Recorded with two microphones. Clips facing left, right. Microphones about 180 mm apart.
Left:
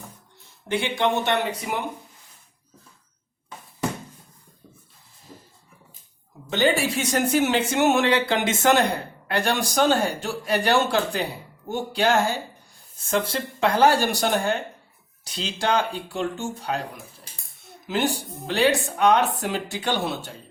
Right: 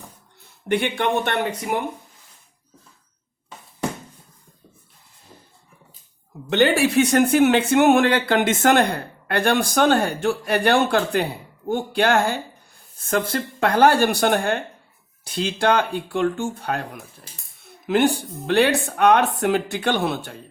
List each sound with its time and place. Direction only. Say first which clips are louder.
0.7 s speech: right 2 dB; 60° right (ahead or behind)
6.5 s speech: right 4 dB; 60° right (ahead or behind)